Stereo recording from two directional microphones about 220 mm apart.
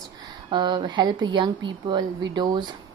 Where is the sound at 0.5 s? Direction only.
20° right (ahead or behind).